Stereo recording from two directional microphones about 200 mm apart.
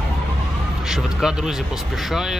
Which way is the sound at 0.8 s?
Centre (ahead or behind).